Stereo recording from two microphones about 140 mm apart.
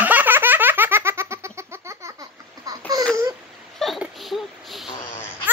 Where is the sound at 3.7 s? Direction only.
Centre (ahead or behind).